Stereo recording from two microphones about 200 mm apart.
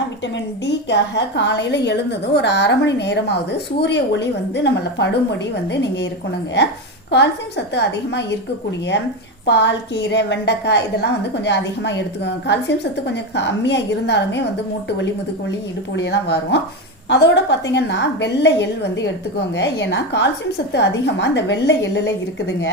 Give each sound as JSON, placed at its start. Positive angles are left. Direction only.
{"t": 0.6, "sound": "a woman's voice", "side_deg": 60}
{"t": 7.7, "sound": "a woman's voice", "side_deg": 60}
{"t": 9.5, "sound": "a woman's voice", "side_deg": 60}
{"t": 16.0, "sound": "a woman's voice", "side_deg": 60}